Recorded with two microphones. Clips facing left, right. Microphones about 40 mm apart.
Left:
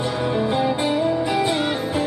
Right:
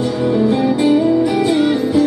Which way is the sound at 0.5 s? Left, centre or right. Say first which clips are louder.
Right 7 dB; left.